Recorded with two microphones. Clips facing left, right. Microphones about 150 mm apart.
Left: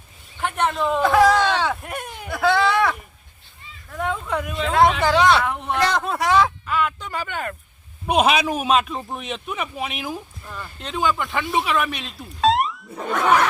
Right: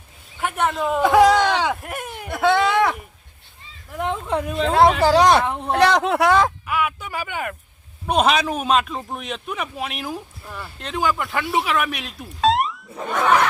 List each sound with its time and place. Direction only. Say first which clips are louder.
0.3 s a man's voice: even; 5° right (ahead or behind)
1.1 s a sound: right 2 dB; 15° right (ahead or behind)
1.8 s a sound: right 1 dB; 5° right (ahead or behind)
2.4 s a sound: right 1 dB; 20° right (ahead or behind)
4.6 s speech: right 2 dB; 30° right (ahead or behind)
5.7 s speech: right 6 dB; 70° right (ahead or behind); by 6.5 s 55° right (ahead or behind)
6.7 s speech: even; 10° right (ahead or behind)
8.0 s speech: even; 5° left (ahead or behind)
10.4 s speech: right 1 dB; 10° right (ahead or behind)